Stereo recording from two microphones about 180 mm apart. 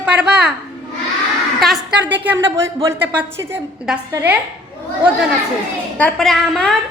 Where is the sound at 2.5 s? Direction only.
15° right (ahead or behind).